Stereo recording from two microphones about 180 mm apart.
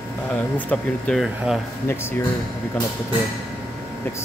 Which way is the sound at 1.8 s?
15° left (ahead or behind).